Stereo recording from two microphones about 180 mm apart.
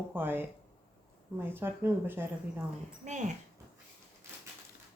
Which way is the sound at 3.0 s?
40° right (ahead or behind).